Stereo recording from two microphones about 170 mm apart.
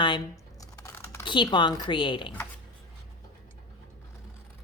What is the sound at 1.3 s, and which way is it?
Speech, 25° left (ahead or behind).